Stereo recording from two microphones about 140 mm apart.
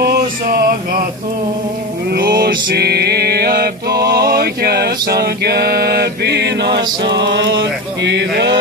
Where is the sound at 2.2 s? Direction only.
90° right.